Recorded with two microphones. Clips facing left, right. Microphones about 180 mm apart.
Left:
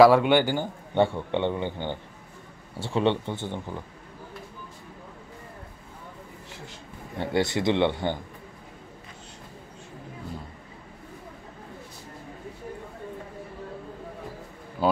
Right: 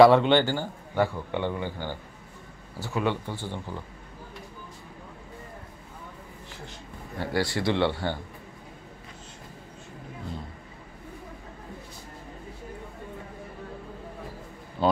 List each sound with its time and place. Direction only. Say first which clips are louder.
0.0 s a man's voice: even; 10° left (ahead or behind)
0.9 s speech: left 3 dB; 25° left (ahead or behind)
7.2 s speech: left 2 dB; 20° left (ahead or behind)
14.8 s a sound: even; 10° left (ahead or behind)